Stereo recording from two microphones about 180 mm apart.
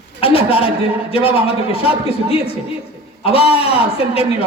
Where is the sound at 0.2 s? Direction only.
30° left (ahead or behind).